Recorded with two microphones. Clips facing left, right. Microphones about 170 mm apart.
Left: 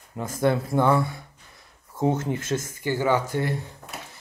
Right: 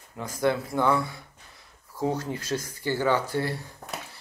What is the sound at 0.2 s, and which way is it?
Speech, 25° left (ahead or behind).